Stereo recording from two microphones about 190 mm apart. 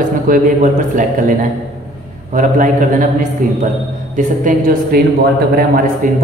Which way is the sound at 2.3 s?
45° right (ahead or behind).